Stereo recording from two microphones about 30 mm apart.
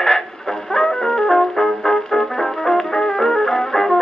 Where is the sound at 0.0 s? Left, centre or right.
Centre.